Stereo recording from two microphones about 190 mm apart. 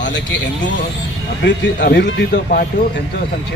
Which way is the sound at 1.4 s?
65° left (ahead or behind).